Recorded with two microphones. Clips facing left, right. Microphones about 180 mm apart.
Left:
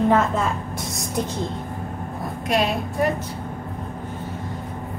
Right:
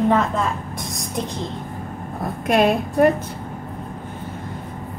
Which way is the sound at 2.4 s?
55° right (ahead or behind).